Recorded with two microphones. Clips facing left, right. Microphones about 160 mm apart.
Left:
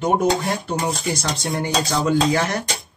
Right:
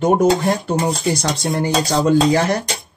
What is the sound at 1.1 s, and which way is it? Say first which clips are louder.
Speech: right 4 dB; 35° right (ahead or behind).